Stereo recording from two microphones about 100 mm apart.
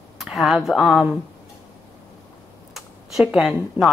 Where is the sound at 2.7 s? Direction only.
5° right (ahead or behind).